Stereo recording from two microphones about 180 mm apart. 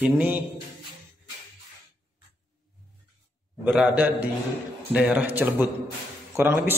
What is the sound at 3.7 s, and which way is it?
Mantra, 5° right (ahead or behind).